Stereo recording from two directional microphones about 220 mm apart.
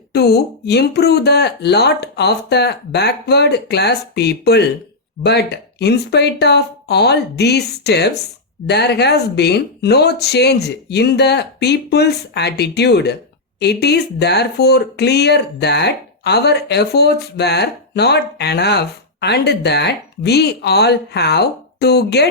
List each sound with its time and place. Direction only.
0.1 s speech: 50° left (ahead or behind)